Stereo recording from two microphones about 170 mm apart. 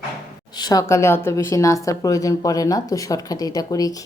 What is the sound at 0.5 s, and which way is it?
A woman's voice, 20° left (ahead or behind).